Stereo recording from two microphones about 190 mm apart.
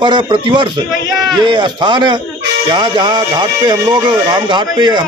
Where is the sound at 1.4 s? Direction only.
25° right (ahead or behind).